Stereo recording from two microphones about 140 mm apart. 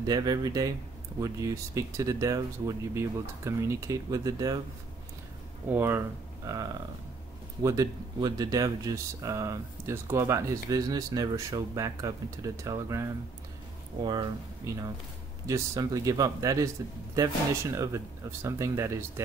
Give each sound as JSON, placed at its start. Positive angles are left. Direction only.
{"t": 0.0, "sound": "speech", "side_deg": -25}
{"t": 5.7, "sound": "speech", "side_deg": -15}
{"t": 15.4, "sound": "speech", "side_deg": -25}